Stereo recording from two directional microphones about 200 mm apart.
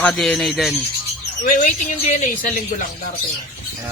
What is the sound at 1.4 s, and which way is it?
Speech, 40° left (ahead or behind).